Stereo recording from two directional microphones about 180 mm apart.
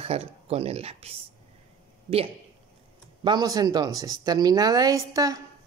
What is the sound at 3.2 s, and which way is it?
Speech, 20° right (ahead or behind).